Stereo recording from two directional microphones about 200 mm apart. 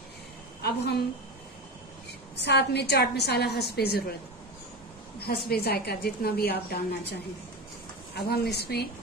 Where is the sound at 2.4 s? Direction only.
55° left (ahead or behind).